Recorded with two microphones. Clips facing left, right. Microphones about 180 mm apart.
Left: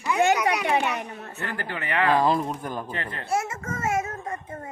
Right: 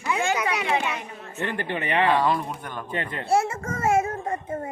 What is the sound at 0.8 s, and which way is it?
Speech, 40° left (ahead or behind).